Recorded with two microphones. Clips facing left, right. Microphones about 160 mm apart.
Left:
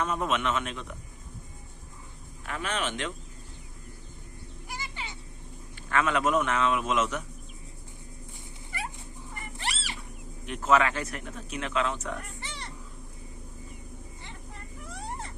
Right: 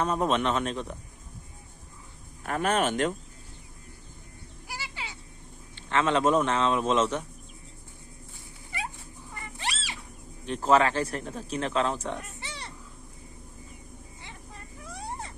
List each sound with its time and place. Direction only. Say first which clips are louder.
0.0 s a man's voice: right 3 dB; 35° right (ahead or behind)
2.4 s speech: right 6 dB; 45° right (ahead or behind)
5.7 s a man's voice: right 2 dB; 25° right (ahead or behind)
9.6 s a sound: right 1 dB; 15° right (ahead or behind)
10.4 s a man's voice: right 2 dB; 30° right (ahead or behind)
14.8 s vehicle: right 1 dB; 15° right (ahead or behind)